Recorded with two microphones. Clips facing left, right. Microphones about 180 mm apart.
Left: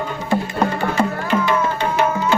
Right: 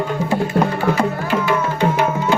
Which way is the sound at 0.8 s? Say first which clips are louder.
Right 2 dB; 5° right (ahead or behind).